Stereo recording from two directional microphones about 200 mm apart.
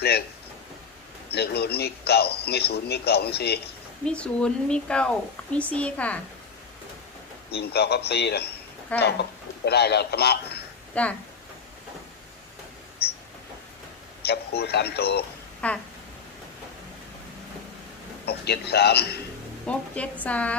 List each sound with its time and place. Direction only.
1.3 s a man's voice: 55° left (ahead or behind)
4.0 s speech: 5° left (ahead or behind)
7.5 s a man's voice: 55° left (ahead or behind)
11.0 s speech: 5° left (ahead or behind)
14.2 s a man's voice: 55° left (ahead or behind)
15.6 s speech: 5° left (ahead or behind)
18.3 s a man's voice: 55° left (ahead or behind)
19.6 s speech: 5° left (ahead or behind)